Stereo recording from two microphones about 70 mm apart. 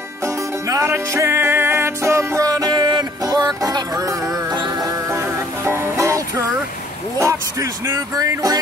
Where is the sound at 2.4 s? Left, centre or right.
Right.